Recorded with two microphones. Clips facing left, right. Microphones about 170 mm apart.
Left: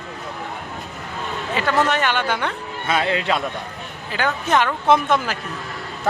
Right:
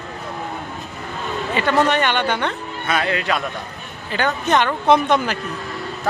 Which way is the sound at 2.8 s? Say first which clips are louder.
Left 1 dB; 25° left (ahead or behind).